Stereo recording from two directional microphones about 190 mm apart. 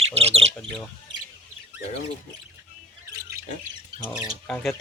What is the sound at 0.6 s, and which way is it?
Bird, centre (ahead or behind).